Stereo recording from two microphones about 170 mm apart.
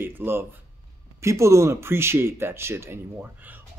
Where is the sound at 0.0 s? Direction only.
15° right (ahead or behind).